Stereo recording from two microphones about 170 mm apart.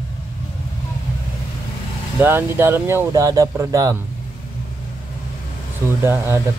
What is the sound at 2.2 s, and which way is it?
Speech, 15° right (ahead or behind).